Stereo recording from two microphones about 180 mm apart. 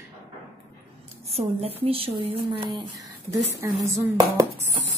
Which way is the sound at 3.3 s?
15° right (ahead or behind).